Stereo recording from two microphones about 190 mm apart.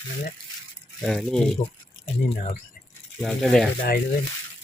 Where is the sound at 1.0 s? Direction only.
Centre (ahead or behind).